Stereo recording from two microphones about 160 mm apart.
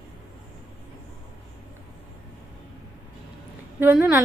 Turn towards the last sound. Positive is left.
turn(degrees=-10)  # may be behind; listen again after turning